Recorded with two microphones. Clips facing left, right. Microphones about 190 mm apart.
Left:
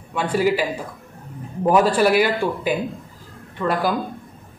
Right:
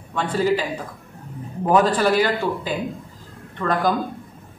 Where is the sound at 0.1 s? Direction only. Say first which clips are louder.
Left 1 dB; 10° left (ahead or behind).